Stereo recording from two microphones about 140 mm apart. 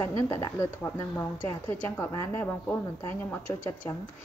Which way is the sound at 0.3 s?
15° left (ahead or behind).